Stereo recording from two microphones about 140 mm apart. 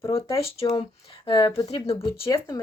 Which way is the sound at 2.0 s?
30° left (ahead or behind).